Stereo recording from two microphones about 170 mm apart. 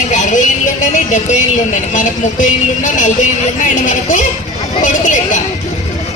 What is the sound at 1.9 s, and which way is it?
Speech, 50° left (ahead or behind).